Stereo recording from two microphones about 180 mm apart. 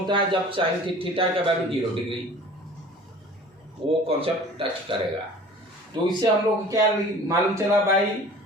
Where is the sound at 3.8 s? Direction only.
30° right (ahead or behind).